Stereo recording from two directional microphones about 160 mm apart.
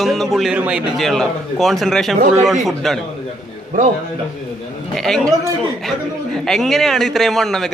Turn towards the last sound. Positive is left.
turn(degrees=0)  # may be behind; listen again after turning